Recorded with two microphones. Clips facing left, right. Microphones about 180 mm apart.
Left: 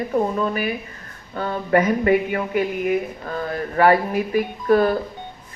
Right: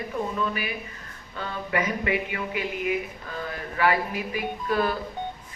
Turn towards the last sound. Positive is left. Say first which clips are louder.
# left 8 dB
turn(degrees=45)  # may be behind; listen again after turning